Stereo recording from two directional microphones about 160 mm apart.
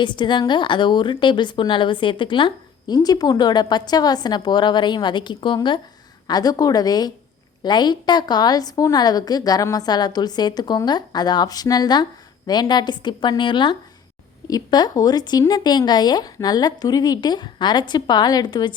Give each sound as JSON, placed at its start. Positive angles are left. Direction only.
{"t": 0.0, "sound": "a woman's voice", "side_deg": 30}